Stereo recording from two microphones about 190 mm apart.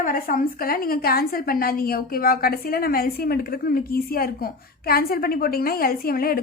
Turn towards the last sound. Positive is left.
turn(degrees=50)  # may be behind; listen again after turning